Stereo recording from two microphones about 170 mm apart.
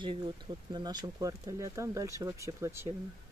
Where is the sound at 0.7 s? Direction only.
25° right (ahead or behind).